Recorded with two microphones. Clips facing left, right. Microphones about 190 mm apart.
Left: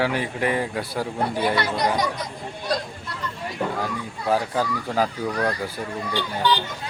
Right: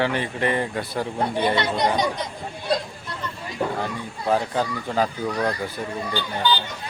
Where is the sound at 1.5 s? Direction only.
25° right (ahead or behind).